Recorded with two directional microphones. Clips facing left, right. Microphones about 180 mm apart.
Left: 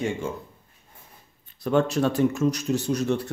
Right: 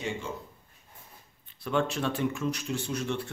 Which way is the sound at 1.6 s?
40° left (ahead or behind).